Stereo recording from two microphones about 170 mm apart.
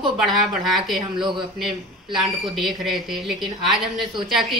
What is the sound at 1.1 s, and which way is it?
Speech, 25° right (ahead or behind).